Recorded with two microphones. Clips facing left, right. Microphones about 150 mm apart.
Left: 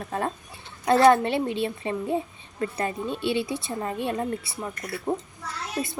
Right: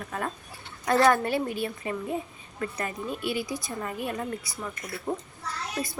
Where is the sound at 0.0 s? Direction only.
30° left (ahead or behind).